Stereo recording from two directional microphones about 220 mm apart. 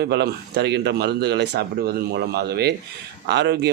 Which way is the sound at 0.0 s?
45° right (ahead or behind).